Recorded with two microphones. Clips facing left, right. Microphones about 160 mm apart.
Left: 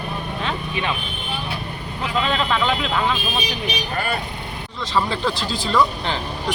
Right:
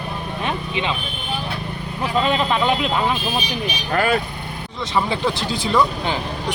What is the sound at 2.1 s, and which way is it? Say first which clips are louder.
Speech: right 2 dB; 15° right (ahead or behind).